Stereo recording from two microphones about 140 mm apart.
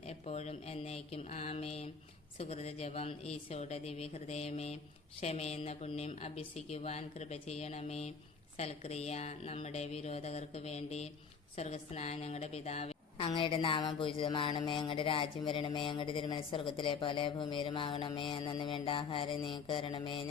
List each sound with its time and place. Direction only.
0.0 s a woman's voice: 50° left (ahead or behind)